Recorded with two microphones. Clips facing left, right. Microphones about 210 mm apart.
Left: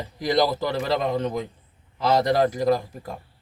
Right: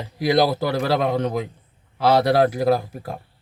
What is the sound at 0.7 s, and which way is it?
A man's voice, 70° right (ahead or behind).